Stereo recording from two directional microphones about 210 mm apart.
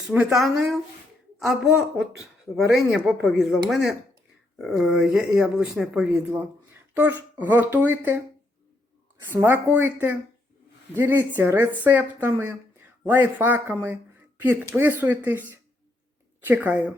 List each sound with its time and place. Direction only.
0.1 s speech: 5° right (ahead or behind)
2.6 s a woman's voice: centre (ahead or behind)
9.2 s a woman's voice: 10° right (ahead or behind)